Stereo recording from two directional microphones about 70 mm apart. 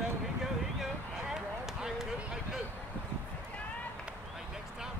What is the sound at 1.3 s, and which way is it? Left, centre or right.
Basketball bounce, centre.